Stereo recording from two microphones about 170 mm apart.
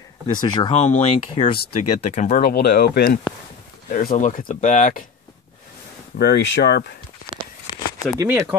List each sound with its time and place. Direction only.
0.3 s speech: 25° left (ahead or behind)
0.7 s speech: 40° left (ahead or behind)
2.5 s speech: 65° left (ahead or behind)
3.9 s speech: 55° left (ahead or behind)
6.1 s speech: 80° left
8.2 s speech: 15° right (ahead or behind)